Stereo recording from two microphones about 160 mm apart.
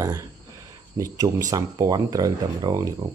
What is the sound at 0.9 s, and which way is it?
Speech, 20° right (ahead or behind).